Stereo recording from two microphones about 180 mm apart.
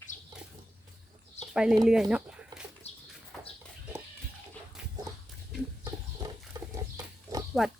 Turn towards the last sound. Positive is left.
turn(degrees=0)  # may be behind; listen again after turning